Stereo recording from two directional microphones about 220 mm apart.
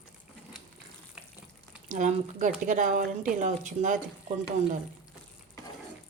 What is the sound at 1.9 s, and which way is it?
Speech, 35° right (ahead or behind).